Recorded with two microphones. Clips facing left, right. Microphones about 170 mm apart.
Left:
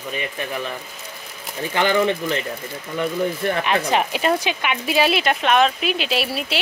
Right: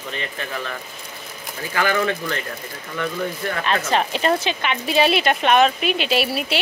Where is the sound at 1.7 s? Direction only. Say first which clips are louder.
Left 2 dB; 20° left (ahead or behind).